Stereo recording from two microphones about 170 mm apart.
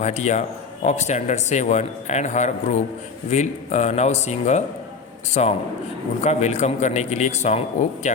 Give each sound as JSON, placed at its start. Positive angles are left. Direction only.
{"t": 0.0, "sound": "speech", "side_deg": 40}